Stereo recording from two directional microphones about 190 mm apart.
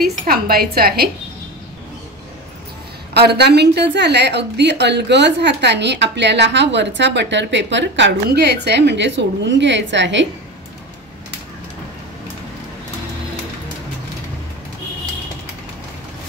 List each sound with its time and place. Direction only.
0.0 s a woman's voice: 55° right (ahead or behind)
3.2 s a woman's voice: 60° right (ahead or behind)